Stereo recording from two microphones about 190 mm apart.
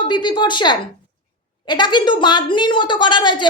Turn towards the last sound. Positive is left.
turn(degrees=25)  # may be behind; listen again after turning